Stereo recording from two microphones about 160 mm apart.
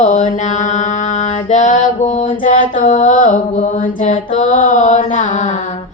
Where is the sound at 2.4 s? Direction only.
55° left (ahead or behind).